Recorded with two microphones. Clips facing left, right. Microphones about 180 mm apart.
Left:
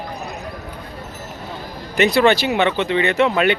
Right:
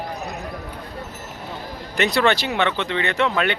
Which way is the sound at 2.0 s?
Centre (ahead or behind).